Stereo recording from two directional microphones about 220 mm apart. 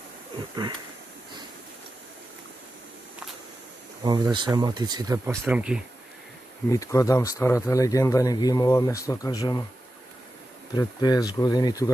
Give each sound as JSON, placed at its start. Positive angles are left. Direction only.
{"t": 4.0, "sound": "speech", "side_deg": -20}
{"t": 5.3, "sound": "speech", "side_deg": 0}
{"t": 6.7, "sound": "speech", "side_deg": 15}
{"t": 10.7, "sound": "speech", "side_deg": 20}